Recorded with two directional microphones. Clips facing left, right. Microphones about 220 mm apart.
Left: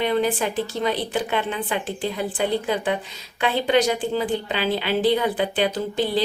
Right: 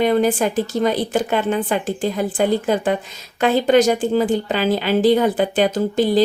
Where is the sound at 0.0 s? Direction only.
45° right (ahead or behind).